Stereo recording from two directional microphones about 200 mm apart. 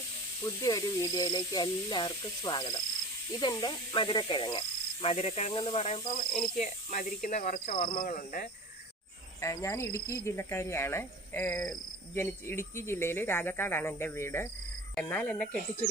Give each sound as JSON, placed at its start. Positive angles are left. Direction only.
{"t": 0.4, "sound": "speech", "side_deg": 20}
{"t": 9.4, "sound": "speech", "side_deg": 15}